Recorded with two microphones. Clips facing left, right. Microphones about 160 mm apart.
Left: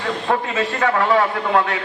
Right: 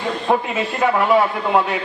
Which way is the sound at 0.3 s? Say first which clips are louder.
Right 2 dB; 15° right (ahead or behind).